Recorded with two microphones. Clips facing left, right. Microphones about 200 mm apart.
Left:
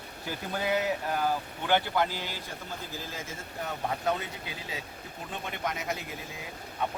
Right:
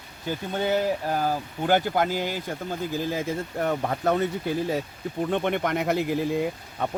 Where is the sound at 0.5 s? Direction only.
30° right (ahead or behind).